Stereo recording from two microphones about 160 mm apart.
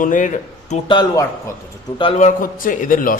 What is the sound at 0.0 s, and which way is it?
Speech, 55° left (ahead or behind).